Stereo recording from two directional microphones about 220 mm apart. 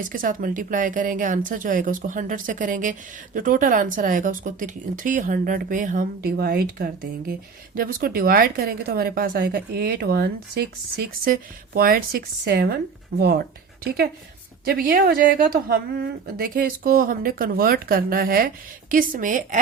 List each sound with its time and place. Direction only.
0.0 s a woman's voice: 40° right (ahead or behind)